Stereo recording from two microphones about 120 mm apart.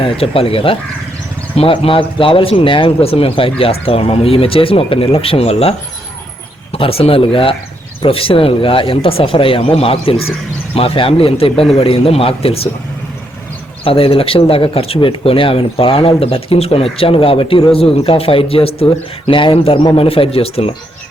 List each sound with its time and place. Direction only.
0.0 s speech: 50° left (ahead or behind)
13.8 s speech: 50° left (ahead or behind)